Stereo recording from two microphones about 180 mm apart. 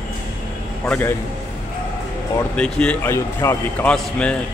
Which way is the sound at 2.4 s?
5° left (ahead or behind).